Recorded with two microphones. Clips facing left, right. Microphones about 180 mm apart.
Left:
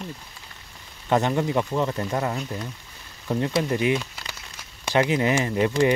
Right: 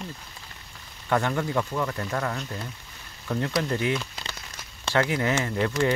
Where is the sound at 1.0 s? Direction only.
20° left (ahead or behind).